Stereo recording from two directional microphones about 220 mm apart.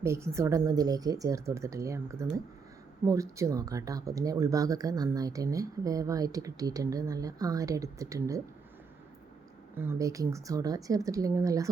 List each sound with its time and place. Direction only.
0.0 s speech: 10° right (ahead or behind)
9.7 s speech: 10° right (ahead or behind)